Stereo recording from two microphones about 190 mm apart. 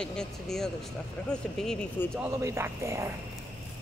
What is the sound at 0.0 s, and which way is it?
Speech, 5° left (ahead or behind).